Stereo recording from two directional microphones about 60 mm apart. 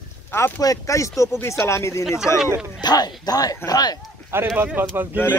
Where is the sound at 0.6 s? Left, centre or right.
Left.